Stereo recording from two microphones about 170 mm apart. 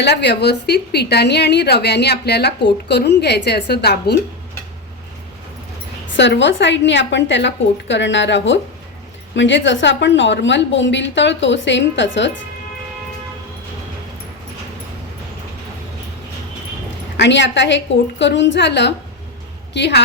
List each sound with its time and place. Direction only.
0.0 s a woman's voice: 85° left
6.1 s a woman's voice: 90° left
17.2 s a woman's voice: 90° left